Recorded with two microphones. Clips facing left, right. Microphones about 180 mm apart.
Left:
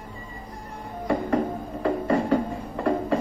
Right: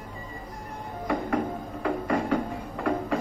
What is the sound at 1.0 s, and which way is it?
Music, 40° left (ahead or behind).